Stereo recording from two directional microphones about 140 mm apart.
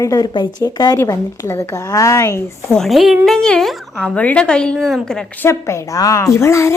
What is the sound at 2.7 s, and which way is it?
A woman's voice, centre (ahead or behind).